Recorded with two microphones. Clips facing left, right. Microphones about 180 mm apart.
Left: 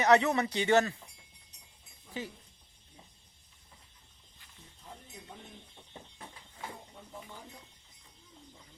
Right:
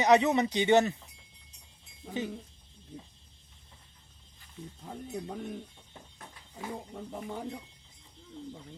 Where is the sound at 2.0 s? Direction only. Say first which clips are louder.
Right 5 dB; 90° right.